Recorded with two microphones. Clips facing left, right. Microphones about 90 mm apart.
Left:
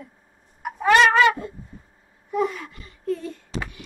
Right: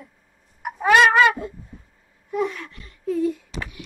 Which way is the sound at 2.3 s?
Centre (ahead or behind).